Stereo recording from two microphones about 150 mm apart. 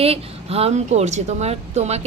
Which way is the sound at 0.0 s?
40° right (ahead or behind).